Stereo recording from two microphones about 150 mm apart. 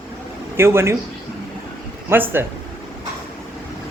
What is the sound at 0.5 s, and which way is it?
Speech, 15° right (ahead or behind).